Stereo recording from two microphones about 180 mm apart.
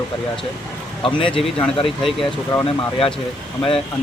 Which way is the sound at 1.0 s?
30° left (ahead or behind).